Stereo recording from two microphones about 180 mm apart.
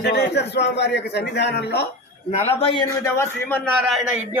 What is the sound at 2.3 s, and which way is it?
Speech, 35° left (ahead or behind).